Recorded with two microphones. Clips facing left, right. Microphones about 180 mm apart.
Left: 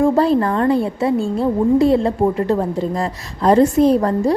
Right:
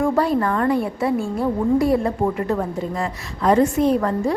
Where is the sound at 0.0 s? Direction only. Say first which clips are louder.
Left 4 dB; 30° left (ahead or behind).